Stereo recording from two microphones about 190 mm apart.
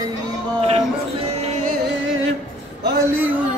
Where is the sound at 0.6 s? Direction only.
30° right (ahead or behind).